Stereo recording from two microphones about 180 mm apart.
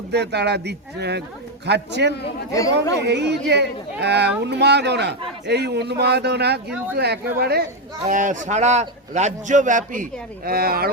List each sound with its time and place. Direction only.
0.1 s speech: 70° right (ahead or behind)
2.5 s speech: 20° left (ahead or behind)
2.9 s speech: 70° right (ahead or behind)
8.0 s a man's voice: 45° right (ahead or behind)